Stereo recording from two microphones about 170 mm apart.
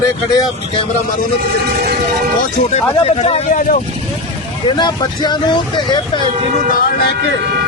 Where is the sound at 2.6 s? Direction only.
40° left (ahead or behind).